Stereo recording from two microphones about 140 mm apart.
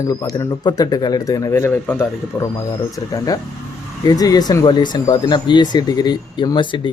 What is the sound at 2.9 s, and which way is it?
Speech, 25° left (ahead or behind).